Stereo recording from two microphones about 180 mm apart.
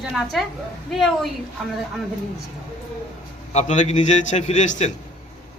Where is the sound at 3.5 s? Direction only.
40° left (ahead or behind).